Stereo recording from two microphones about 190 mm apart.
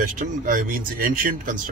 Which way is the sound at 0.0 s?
45° right (ahead or behind).